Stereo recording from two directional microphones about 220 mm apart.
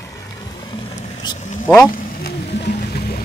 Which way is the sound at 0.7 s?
20° left (ahead or behind).